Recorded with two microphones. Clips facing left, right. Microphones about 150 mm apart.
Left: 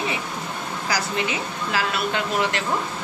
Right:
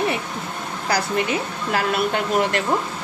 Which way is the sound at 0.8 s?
55° right (ahead or behind).